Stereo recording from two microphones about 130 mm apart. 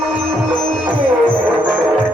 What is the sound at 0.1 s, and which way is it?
Music, 10° right (ahead or behind).